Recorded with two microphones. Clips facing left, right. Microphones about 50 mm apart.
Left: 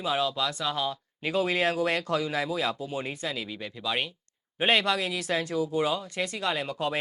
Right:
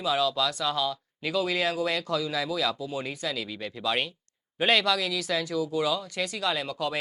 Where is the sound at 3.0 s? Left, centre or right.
Left.